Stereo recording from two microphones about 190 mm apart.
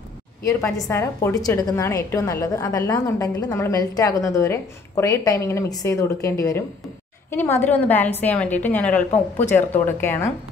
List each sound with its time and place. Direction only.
0.4 s a woman's voice: 15° left (ahead or behind)